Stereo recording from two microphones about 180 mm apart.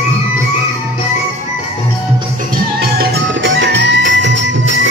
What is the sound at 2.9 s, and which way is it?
Music, 75° right (ahead or behind).